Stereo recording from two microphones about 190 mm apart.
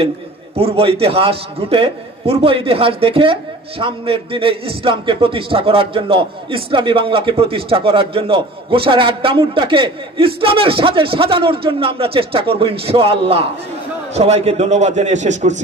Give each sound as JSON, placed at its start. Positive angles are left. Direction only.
{"t": 0.6, "sound": "a man's voice", "side_deg": -30}